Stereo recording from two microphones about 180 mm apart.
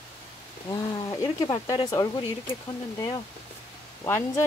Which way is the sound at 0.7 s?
20° left (ahead or behind).